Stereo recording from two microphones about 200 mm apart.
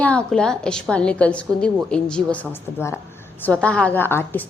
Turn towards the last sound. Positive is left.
turn(degrees=10)  # may be behind; listen again after turning